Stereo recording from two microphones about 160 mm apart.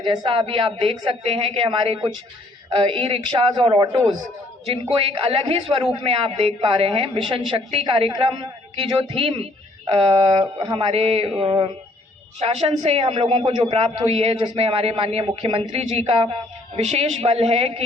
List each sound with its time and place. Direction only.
0.0 s a woman's voice: 30° right (ahead or behind)